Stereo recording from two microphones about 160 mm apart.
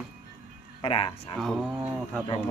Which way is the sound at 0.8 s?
35° left (ahead or behind).